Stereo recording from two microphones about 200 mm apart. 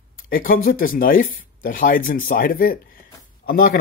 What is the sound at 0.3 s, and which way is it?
Speech, 45° left (ahead or behind).